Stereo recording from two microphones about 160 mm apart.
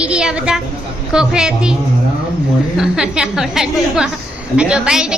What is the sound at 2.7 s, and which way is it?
A woman's voice, 5° right (ahead or behind).